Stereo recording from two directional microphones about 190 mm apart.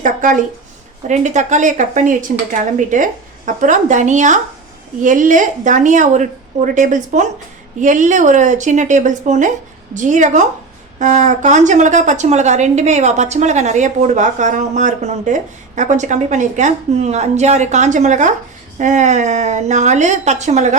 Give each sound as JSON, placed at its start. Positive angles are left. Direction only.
{"t": 0.0, "sound": "a woman's voice", "side_deg": -45}